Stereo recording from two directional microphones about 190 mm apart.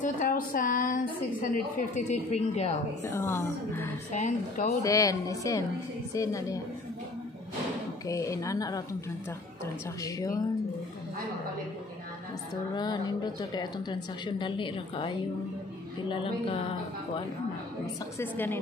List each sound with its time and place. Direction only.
0.0 s a woman's voice: 45° left (ahead or behind)
3.1 s speech: 10° left (ahead or behind)
4.1 s a woman's voice: 40° left (ahead or behind)
4.8 s speech: 15° left (ahead or behind)
8.1 s speech: 15° left (ahead or behind)
10.0 s speech: 15° left (ahead or behind)
12.7 s speech: 20° left (ahead or behind)
16.1 s speech: 30° left (ahead or behind)
18.2 s speech: 10° left (ahead or behind)